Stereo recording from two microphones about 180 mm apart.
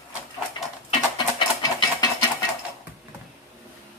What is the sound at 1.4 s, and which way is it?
Engine, 25° left (ahead or behind).